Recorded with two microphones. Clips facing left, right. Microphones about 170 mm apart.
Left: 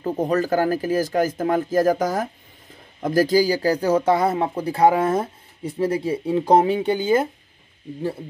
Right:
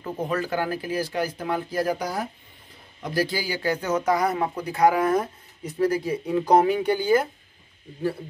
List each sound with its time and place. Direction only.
0.0 s a man's voice: 40° left (ahead or behind); by 7.2 s 20° left (ahead or behind)